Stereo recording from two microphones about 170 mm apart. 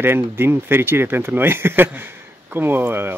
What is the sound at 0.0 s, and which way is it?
Speech, 15° right (ahead or behind).